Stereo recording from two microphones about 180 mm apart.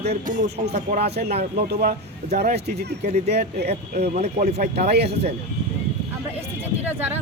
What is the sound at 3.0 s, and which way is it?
Music, 40° right (ahead or behind).